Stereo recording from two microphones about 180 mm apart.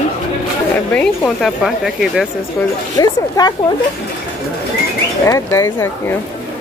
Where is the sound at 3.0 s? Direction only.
20° left (ahead or behind).